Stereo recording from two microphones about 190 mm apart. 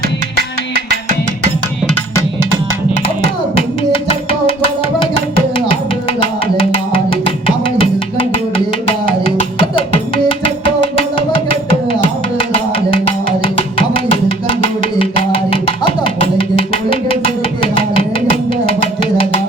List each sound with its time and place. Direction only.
0.3 s music: 55° right (ahead or behind)
7.3 s music: 30° left (ahead or behind)
9.2 s music: 30° left (ahead or behind)
12.9 s music: 30° left (ahead or behind)
16.0 s music: 30° left (ahead or behind)